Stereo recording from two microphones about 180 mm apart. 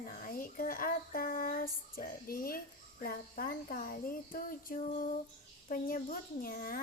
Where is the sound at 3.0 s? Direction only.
50° left (ahead or behind).